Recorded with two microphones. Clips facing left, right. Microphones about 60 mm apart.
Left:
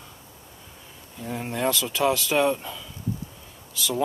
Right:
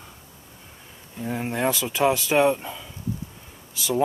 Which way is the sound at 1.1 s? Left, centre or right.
Right.